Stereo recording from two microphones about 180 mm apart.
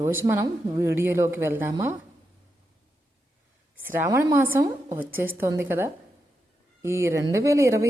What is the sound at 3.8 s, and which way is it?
Speech, 10° right (ahead or behind).